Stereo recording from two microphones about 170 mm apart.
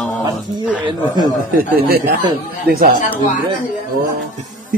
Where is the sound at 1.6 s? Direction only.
60° right (ahead or behind).